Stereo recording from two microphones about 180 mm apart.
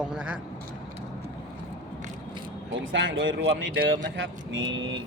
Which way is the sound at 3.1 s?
85° right.